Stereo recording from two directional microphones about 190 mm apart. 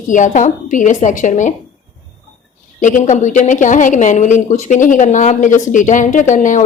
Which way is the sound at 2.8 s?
40° left (ahead or behind).